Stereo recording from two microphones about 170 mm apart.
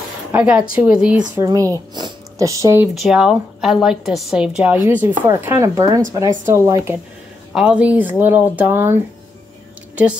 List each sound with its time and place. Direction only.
0.3 s speech: 5° right (ahead or behind)
1.3 s speech: 20° right (ahead or behind)
2.9 s a woman's voice: centre (ahead or behind)
4.8 s speech: 15° right (ahead or behind)